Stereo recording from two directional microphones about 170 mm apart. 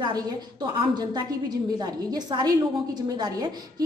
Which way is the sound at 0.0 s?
25° right (ahead or behind).